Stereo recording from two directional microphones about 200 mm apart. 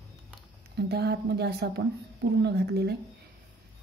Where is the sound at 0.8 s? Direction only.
55° right (ahead or behind).